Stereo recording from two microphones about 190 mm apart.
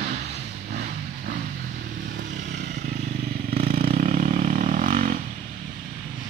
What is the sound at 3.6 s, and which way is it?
Vehicle, 50° right (ahead or behind).